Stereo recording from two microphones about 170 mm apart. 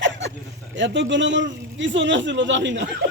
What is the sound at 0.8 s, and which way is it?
A man's voice, 90° right.